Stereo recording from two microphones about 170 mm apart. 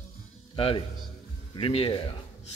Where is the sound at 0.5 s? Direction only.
35° left (ahead or behind).